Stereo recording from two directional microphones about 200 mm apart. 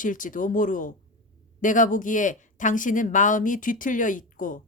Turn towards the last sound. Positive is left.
turn(degrees=40)  # may be behind; listen again after turning